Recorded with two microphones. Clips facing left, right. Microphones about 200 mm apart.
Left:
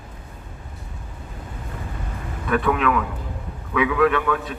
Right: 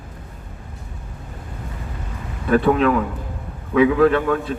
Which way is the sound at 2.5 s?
35° right (ahead or behind).